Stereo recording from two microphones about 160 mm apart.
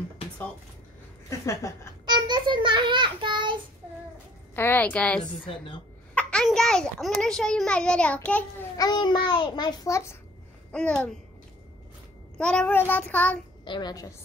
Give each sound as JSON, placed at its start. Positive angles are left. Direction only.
{"t": 1.4, "sound": "child singing", "side_deg": 20}
{"t": 2.0, "sound": "child singing", "side_deg": -25}
{"t": 4.6, "sound": "child singing", "side_deg": 10}
{"t": 6.1, "sound": "a child's voice", "side_deg": 5}
{"t": 8.7, "sound": "a child's voice", "side_deg": 25}
{"t": 10.7, "sound": "a child's voice", "side_deg": 5}
{"t": 12.4, "sound": "child singing", "side_deg": 5}
{"t": 13.7, "sound": "a child's voice", "side_deg": 25}